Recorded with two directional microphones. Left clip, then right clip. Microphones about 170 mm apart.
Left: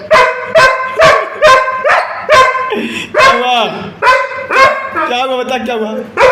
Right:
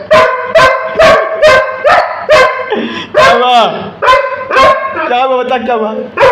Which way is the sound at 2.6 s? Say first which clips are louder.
Right 1 dB; 30° left (ahead or behind).